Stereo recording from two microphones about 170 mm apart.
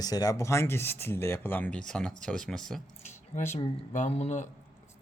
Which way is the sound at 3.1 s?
45° left (ahead or behind).